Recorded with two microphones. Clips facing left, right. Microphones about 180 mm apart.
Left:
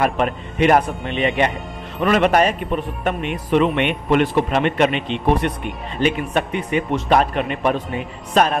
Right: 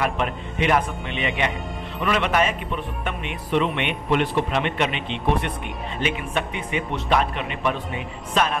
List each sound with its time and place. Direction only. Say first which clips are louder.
0.0 s speech: left 5 dB; 45° left (ahead or behind)